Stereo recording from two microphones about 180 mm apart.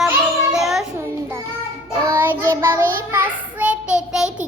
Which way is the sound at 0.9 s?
15° right (ahead or behind).